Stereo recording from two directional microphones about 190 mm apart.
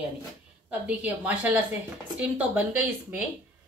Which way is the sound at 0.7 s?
10° right (ahead or behind).